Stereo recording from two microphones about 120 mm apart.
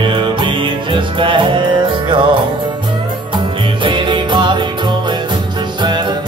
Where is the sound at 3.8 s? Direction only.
45° right (ahead or behind).